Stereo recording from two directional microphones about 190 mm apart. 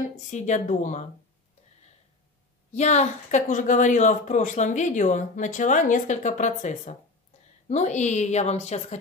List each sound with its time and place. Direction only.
0.3 s a woman's voice: 40° left (ahead or behind)
2.7 s a woman's voice: 35° left (ahead or behind)